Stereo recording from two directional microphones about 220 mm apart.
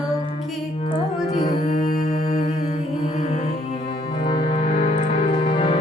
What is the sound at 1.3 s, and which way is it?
Music, 35° left (ahead or behind).